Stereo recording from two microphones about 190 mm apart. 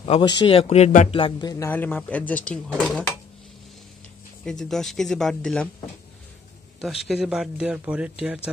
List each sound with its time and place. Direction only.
0.0 s speech: 25° left (ahead or behind); by 3.1 s 5° left (ahead or behind)
4.5 s a man's voice: centre (ahead or behind)
6.8 s a man's voice: centre (ahead or behind)